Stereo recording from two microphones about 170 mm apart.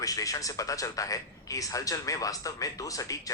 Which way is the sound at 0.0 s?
20° left (ahead or behind).